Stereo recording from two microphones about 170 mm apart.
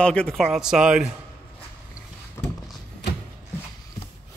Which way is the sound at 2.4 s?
15° left (ahead or behind).